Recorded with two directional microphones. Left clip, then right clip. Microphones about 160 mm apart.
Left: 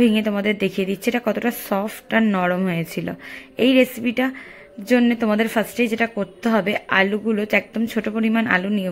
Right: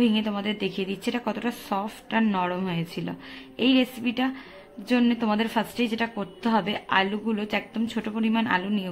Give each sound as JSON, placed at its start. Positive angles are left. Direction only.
{"t": 0.0, "sound": "a woman's voice", "side_deg": 25}